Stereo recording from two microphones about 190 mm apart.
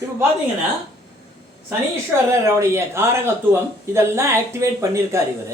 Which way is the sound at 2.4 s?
15° right (ahead or behind).